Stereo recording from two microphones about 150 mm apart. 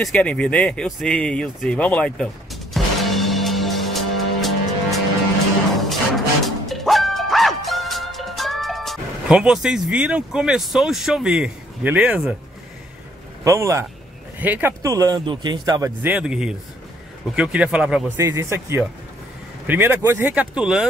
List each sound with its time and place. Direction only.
0.0 s a sound: 10° left (ahead or behind)
5.8 s music: centre (ahead or behind)
13.4 s speech: 20° right (ahead or behind)
16.1 s speech: 5° right (ahead or behind)
18.1 s speech: 20° right (ahead or behind)